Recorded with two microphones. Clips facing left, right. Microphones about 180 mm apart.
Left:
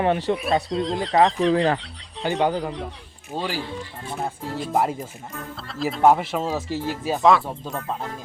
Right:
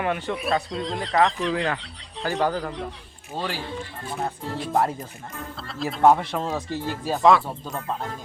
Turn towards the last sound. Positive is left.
turn(degrees=5)  # may be behind; listen again after turning